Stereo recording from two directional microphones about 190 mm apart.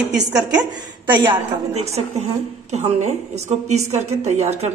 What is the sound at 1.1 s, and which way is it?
Speech, 25° right (ahead or behind).